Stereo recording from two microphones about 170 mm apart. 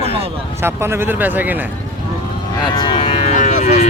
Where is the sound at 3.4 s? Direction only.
45° left (ahead or behind).